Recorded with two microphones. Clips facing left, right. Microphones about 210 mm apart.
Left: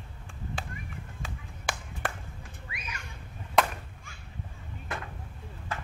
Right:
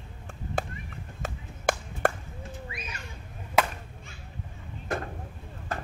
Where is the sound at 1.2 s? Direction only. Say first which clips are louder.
Right 9 dB; 45° right (ahead or behind).